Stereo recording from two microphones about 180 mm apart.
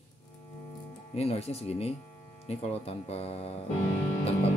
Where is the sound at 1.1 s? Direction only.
35° left (ahead or behind).